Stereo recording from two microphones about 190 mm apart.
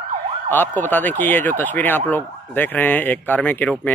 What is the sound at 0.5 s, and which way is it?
Speech, 10° left (ahead or behind).